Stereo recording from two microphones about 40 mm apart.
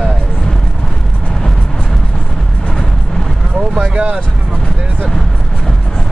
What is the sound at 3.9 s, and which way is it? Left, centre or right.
Vehicle, right.